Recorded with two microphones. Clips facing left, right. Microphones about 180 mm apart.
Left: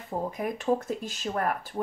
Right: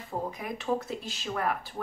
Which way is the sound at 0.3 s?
45° left (ahead or behind).